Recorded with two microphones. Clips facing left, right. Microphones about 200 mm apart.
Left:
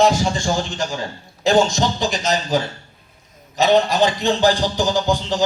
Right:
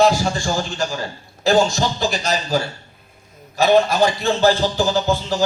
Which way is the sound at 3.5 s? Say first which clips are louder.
Right 1 dB; 20° left (ahead or behind).